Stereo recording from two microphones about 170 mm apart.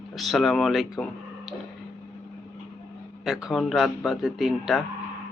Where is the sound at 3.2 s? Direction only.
Centre (ahead or behind).